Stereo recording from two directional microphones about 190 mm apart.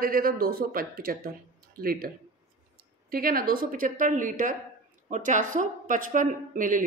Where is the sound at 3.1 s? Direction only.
50° right (ahead or behind).